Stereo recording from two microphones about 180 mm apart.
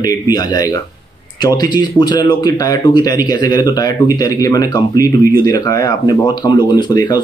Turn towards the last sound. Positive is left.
turn(degrees=25)  # may be behind; listen again after turning